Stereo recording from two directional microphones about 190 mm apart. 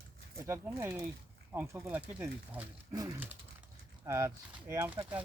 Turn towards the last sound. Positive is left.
turn(degrees=-10)  # may be behind; listen again after turning